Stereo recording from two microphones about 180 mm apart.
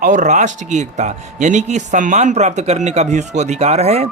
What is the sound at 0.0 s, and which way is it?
Speech, 45° right (ahead or behind).